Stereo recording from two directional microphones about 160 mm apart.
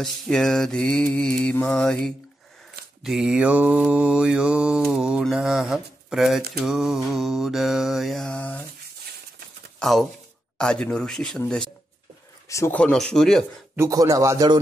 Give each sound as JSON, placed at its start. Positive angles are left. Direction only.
{"t": 0.0, "sound": "mantra", "side_deg": 5}
{"t": 9.8, "sound": "speech", "side_deg": 0}
{"t": 10.6, "sound": "mantra", "side_deg": 5}
{"t": 12.4, "sound": "a sound", "side_deg": 20}
{"t": 12.7, "sound": "mantra", "side_deg": 5}
{"t": 13.7, "sound": "a man's voice", "side_deg": -20}